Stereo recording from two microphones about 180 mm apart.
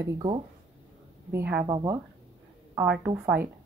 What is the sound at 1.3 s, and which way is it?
Speech, 10° right (ahead or behind).